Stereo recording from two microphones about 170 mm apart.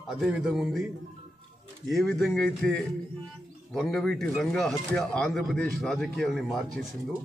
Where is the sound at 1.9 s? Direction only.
Centre (ahead or behind).